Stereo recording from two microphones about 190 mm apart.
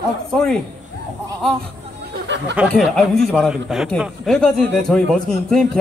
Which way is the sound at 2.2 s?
65° right (ahead or behind).